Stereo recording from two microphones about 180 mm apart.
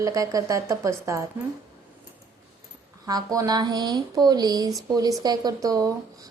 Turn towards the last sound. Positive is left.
turn(degrees=-20)  # may be behind; listen again after turning